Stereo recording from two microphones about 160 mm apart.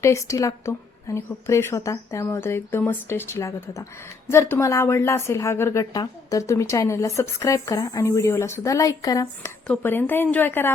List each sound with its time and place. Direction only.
0.0 s a woman's voice: 20° left (ahead or behind)